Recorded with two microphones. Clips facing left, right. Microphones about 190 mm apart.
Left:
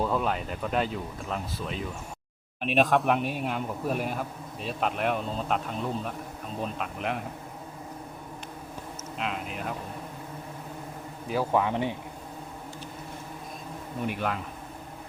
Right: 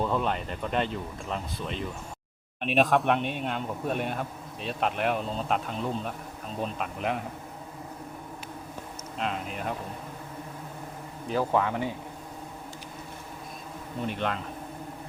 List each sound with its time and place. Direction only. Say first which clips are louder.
0.0 s speech: even; 5° left (ahead or behind)
9.1 s speech: right 1 dB; centre (ahead or behind)
11.3 s speech: even; 10° left (ahead or behind)
14.1 s speech: even; 5° left (ahead or behind)